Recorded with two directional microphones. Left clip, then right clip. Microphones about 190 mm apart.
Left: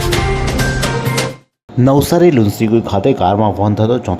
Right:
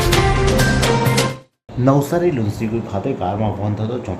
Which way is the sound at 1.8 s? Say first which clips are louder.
Left 6 dB; 40° left (ahead or behind).